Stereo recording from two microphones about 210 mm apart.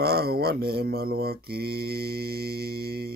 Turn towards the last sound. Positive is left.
turn(degrees=-50)  # may be behind; listen again after turning